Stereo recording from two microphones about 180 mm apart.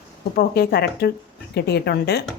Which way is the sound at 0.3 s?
60° left (ahead or behind).